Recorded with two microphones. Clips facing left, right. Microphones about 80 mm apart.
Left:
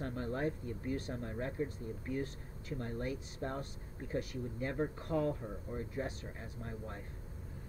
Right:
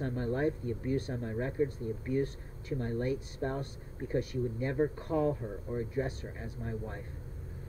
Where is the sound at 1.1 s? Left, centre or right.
Centre.